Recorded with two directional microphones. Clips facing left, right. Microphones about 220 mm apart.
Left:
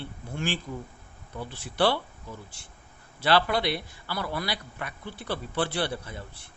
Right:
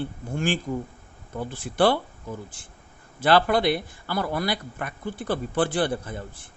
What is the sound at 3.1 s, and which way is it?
Speech, 50° right (ahead or behind).